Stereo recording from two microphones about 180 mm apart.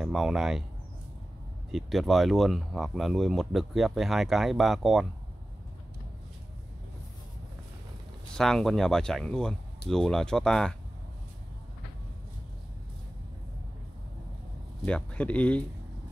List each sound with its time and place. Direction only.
0.0 s speech: centre (ahead or behind)
1.7 s speech: centre (ahead or behind)
8.3 s speech: centre (ahead or behind)
14.9 s speech: 5° left (ahead or behind)